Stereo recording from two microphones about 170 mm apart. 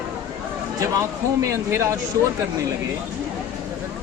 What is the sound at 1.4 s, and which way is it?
Speech, 15° right (ahead or behind).